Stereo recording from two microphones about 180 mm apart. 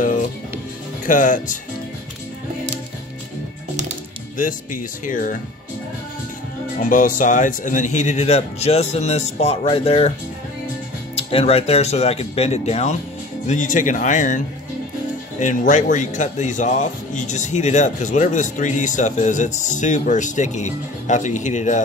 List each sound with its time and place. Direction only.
1.0 s speech: 45° left (ahead or behind)
5.0 s speech: 50° left (ahead or behind)
6.8 s speech: 50° left (ahead or behind)
11.2 s speech: 35° left (ahead or behind)